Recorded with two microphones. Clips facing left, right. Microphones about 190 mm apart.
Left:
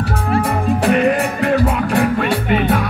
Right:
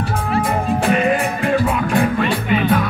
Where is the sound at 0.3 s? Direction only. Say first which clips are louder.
Left 2 dB; 35° left (ahead or behind).